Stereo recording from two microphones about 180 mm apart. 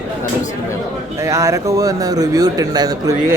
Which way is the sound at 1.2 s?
15° right (ahead or behind).